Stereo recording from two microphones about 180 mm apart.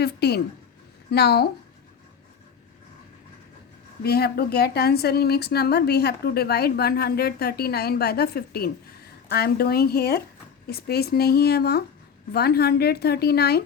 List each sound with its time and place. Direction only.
0.0 s speech: 65° left (ahead or behind)
4.0 s speech: 60° left (ahead or behind)